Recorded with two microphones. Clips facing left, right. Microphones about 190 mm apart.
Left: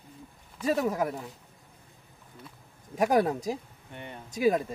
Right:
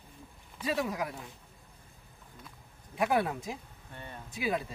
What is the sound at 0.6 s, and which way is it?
Speech, 45° left (ahead or behind).